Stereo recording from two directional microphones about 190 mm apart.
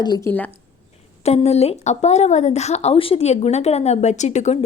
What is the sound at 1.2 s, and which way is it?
Speech, 35° left (ahead or behind).